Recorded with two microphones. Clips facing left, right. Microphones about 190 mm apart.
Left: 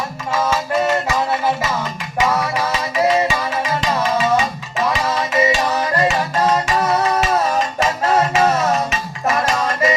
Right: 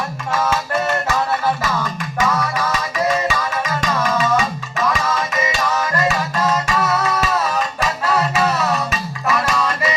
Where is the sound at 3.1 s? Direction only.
25° left (ahead or behind).